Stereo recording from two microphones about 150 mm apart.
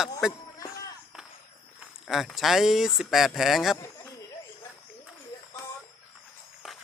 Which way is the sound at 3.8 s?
20° left (ahead or behind).